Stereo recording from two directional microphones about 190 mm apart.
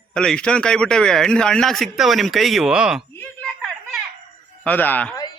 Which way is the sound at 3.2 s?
5° left (ahead or behind).